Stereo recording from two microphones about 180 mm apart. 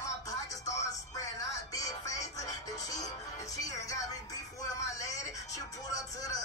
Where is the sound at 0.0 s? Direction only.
20° left (ahead or behind).